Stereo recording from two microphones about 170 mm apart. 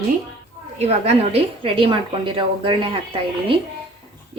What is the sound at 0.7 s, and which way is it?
A woman's voice, 40° right (ahead or behind).